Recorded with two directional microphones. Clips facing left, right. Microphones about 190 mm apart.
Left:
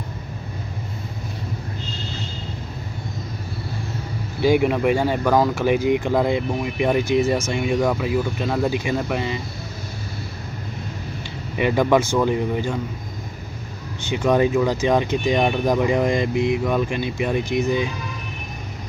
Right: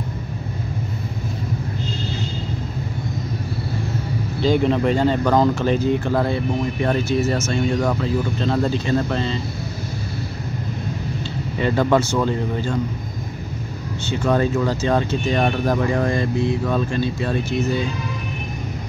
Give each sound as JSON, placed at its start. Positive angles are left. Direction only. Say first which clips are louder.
{"t": 4.4, "sound": "speech", "louder": "even", "side_deg": 10}
{"t": 11.5, "sound": "speech", "louder": "left 1 dB", "side_deg": 15}
{"t": 14.0, "sound": "speech", "louder": "left 1 dB", "side_deg": 15}